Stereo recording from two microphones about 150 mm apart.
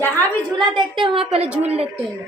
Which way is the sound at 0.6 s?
30° right (ahead or behind).